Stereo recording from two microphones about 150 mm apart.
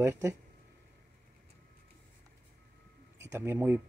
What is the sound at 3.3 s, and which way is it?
Speech, 15° right (ahead or behind).